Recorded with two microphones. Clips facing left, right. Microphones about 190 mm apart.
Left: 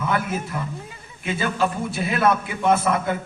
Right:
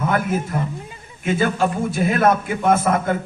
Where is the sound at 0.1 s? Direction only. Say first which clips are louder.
Right 4 dB; 45° right (ahead or behind).